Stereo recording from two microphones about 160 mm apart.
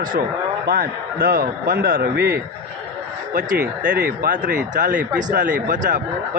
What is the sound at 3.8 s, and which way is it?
Speech, 80° right.